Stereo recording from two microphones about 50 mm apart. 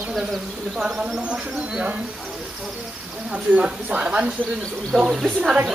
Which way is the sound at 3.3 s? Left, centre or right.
Right.